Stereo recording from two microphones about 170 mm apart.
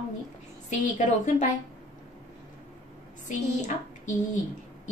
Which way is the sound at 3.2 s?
45° left (ahead or behind).